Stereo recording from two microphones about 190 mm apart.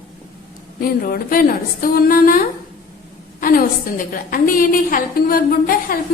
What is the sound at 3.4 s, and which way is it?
A woman's voice, 45° left (ahead or behind).